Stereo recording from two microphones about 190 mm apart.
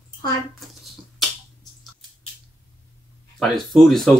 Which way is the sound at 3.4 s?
Centre (ahead or behind).